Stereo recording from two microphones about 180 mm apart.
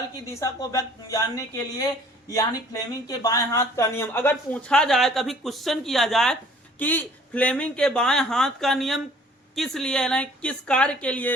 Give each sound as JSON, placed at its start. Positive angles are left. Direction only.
{"t": 0.3, "sound": "a woman's voice", "side_deg": 20}